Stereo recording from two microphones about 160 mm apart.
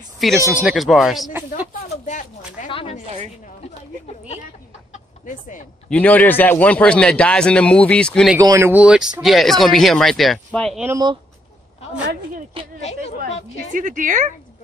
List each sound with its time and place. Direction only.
0.2 s speech: centre (ahead or behind)
2.0 s a sound: 50° left (ahead or behind)
2.7 s a sound: 35° left (ahead or behind)
5.2 s speech: 55° left (ahead or behind)
5.9 s a man's voice: 10° left (ahead or behind)
8.4 s speech: 20° right (ahead or behind); by 10.8 s centre (ahead or behind)
13.7 s a woman's voice: 55° right (ahead or behind)